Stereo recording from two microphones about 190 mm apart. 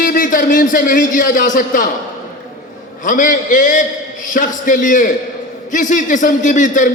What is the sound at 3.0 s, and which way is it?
A man's voice, 45° left (ahead or behind).